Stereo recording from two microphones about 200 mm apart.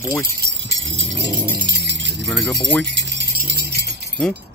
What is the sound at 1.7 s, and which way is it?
Jingle bell, 60° right (ahead or behind).